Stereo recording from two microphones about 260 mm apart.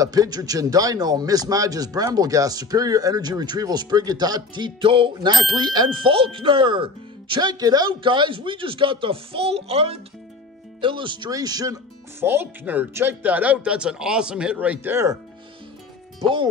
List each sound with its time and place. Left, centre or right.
0.0 s a man's voice: centre